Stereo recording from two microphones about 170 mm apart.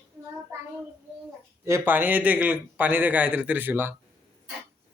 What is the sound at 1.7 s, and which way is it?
A man's voice, 15° right (ahead or behind).